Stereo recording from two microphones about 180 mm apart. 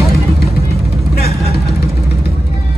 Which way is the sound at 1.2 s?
65° left (ahead or behind).